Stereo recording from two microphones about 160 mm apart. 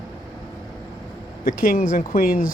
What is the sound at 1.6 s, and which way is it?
Speech, 65° left (ahead or behind).